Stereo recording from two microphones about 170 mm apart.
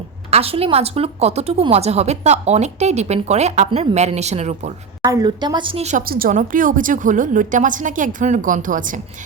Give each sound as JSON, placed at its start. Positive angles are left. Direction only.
{"t": 0.3, "sound": "a woman's voice", "side_deg": -35}
{"t": 5.0, "sound": "a woman's voice", "side_deg": -25}
{"t": 6.1, "sound": "a woman's voice", "side_deg": -60}